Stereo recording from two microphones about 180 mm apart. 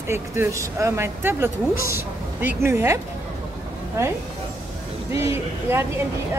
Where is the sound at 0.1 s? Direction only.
15° right (ahead or behind).